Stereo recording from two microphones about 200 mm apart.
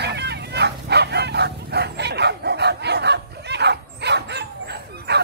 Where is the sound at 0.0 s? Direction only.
55° right (ahead or behind).